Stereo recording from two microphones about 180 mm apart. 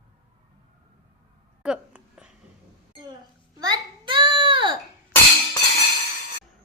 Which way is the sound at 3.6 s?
25° right (ahead or behind).